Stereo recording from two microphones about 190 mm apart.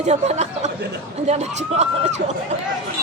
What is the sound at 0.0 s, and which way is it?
Speech, 35° right (ahead or behind).